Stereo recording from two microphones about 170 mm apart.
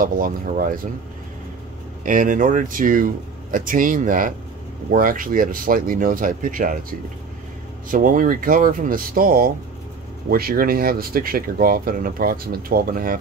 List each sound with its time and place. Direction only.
0.0 s speech: 55° right (ahead or behind)
2.0 s speech: 50° right (ahead or behind)